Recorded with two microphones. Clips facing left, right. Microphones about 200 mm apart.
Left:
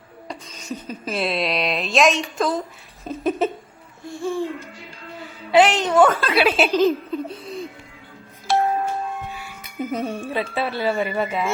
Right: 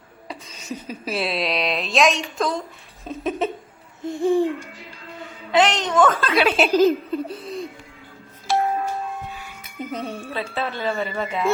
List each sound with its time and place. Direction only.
0.3 s speech: 5° right (ahead or behind)
3.0 s a sound: centre (ahead or behind)
4.0 s babbling: 20° right (ahead or behind)
5.5 s a woman's voice: 10° left (ahead or behind)
6.7 s speech: 5° right (ahead or behind)
9.9 s a woman's voice: 10° left (ahead or behind)